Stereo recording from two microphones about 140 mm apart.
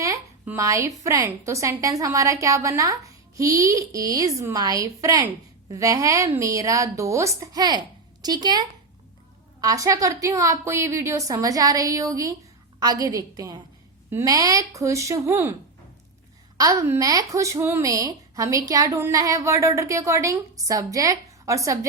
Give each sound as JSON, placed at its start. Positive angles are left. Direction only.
{"t": 0.4, "sound": "speech", "side_deg": -20}
{"t": 16.6, "sound": "speech", "side_deg": -25}